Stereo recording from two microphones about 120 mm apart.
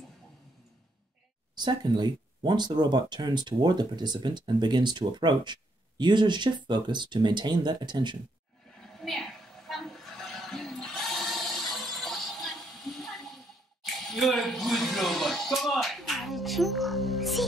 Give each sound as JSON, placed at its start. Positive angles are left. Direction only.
{"t": 1.5, "sound": "speech", "side_deg": -35}
{"t": 8.8, "sound": "train", "side_deg": 0}
{"t": 13.8, "sound": "speech", "side_deg": 0}